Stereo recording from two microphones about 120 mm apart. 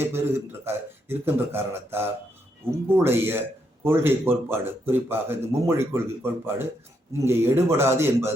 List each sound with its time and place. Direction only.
0.0 s speech: 20° right (ahead or behind)